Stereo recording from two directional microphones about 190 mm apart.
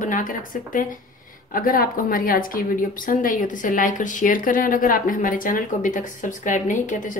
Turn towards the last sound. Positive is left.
turn(degrees=45)  # may be behind; listen again after turning